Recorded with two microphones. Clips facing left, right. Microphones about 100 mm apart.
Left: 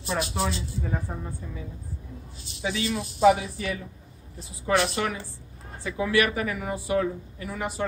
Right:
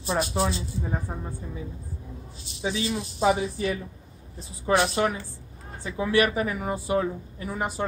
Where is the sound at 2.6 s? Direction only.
25° right (ahead or behind).